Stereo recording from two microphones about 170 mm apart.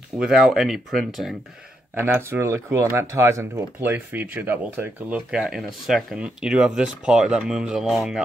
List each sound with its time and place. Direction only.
0.2 s speech: 5° right (ahead or behind)
2.0 s speech: 15° right (ahead or behind)